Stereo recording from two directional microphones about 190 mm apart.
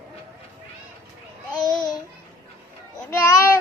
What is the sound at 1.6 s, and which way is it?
Babbling, 20° left (ahead or behind).